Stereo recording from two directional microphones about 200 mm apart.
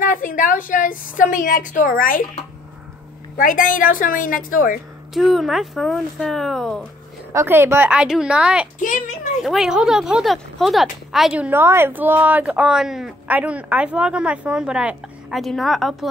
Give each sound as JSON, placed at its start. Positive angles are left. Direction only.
{"t": 0.0, "sound": "a woman's voice", "side_deg": 45}
{"t": 3.3, "sound": "a woman's voice", "side_deg": 45}
{"t": 5.1, "sound": "speech", "side_deg": 0}
{"t": 7.3, "sound": "speech", "side_deg": -10}